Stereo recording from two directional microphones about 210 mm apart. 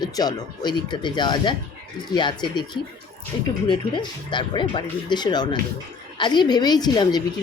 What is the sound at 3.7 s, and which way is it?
A woman's voice, 20° left (ahead or behind).